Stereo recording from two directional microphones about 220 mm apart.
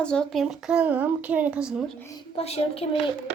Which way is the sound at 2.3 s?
30° left (ahead or behind).